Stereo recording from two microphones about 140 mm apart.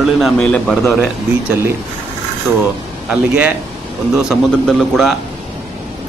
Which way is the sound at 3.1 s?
5° right (ahead or behind).